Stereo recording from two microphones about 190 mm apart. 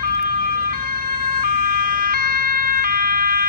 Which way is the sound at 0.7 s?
50° right (ahead or behind).